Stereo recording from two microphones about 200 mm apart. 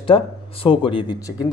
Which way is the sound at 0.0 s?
25° left (ahead or behind).